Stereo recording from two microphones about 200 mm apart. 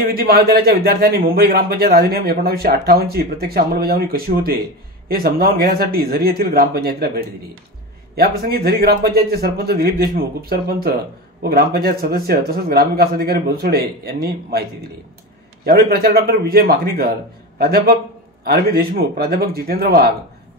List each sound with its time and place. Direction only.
0.0 s a man's voice: 50° right (ahead or behind)
15.6 s a man's voice: 50° right (ahead or behind)